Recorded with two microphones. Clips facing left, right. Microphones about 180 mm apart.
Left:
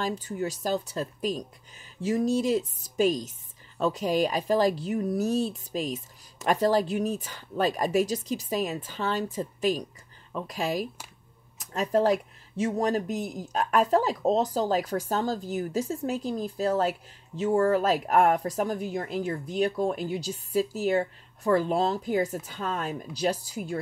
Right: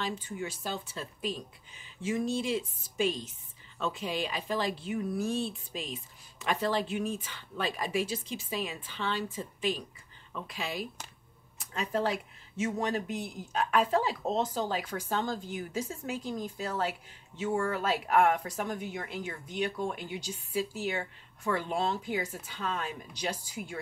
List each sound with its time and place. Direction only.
0.0 s speech: 40° left (ahead or behind)